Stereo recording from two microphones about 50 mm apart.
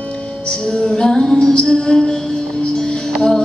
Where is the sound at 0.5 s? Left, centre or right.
Centre.